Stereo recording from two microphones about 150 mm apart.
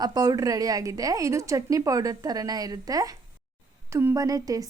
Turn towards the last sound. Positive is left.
turn(degrees=-25)  # may be behind; listen again after turning